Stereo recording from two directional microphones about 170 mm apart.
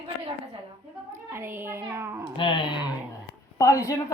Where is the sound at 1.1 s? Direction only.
15° right (ahead or behind).